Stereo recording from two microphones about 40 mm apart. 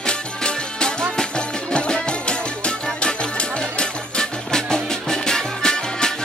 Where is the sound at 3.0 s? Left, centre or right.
Left.